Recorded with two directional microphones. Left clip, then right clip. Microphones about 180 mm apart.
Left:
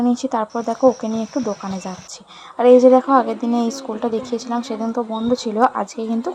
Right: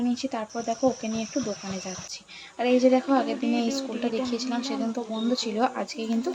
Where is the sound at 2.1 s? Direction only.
25° left (ahead or behind).